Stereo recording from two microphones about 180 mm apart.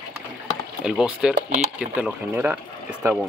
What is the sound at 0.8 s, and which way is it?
Speech, 5° right (ahead or behind).